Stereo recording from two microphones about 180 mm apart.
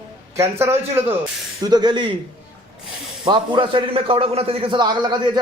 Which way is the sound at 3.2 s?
25° right (ahead or behind).